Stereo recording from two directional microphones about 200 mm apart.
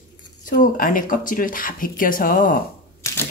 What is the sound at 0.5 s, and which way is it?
Speech, 45° left (ahead or behind).